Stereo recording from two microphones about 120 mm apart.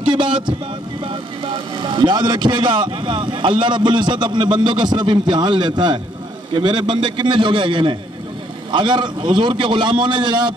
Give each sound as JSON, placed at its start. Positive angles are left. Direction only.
{"t": 0.0, "sound": "speech", "side_deg": -40}